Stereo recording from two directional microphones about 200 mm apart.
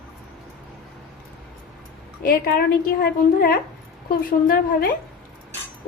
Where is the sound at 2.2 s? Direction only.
45° left (ahead or behind).